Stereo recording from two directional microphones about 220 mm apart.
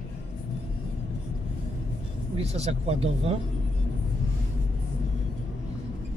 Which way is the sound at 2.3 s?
30° right (ahead or behind).